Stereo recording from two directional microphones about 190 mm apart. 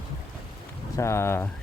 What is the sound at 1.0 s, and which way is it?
Speech, 15° left (ahead or behind).